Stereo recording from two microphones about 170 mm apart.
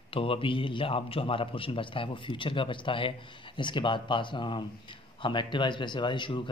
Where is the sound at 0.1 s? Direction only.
30° left (ahead or behind).